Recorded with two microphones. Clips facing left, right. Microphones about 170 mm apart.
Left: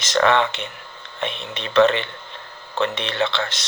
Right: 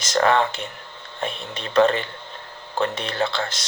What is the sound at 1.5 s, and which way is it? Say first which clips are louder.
Speech: left 2 dB; 30° right (ahead or behind).